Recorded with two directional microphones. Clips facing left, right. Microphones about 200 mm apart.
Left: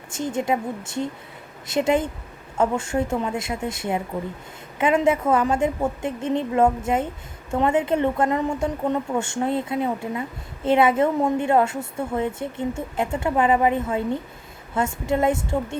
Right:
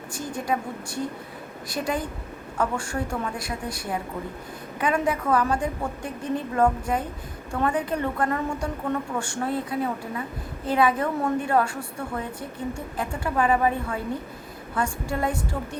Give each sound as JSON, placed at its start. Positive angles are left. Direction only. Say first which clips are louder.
{"t": 0.1, "sound": "a woman's voice", "louder": "left 5 dB", "side_deg": 25}